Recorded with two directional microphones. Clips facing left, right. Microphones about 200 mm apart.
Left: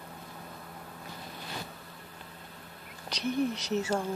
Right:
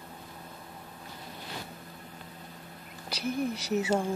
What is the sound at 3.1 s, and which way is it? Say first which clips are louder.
Speech: left 1 dB; 5° right (ahead or behind).